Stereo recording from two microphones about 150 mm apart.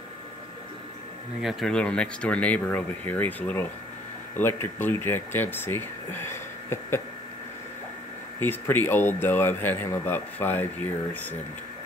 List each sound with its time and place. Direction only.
1.4 s speech: centre (ahead or behind); by 7.0 s 15° left (ahead or behind)
8.4 s speech: 15° left (ahead or behind)